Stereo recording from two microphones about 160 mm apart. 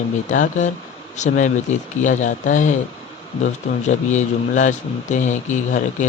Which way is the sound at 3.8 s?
45° left (ahead or behind).